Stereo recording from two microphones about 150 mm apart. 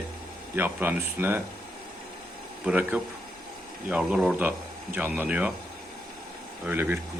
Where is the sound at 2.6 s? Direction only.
10° right (ahead or behind).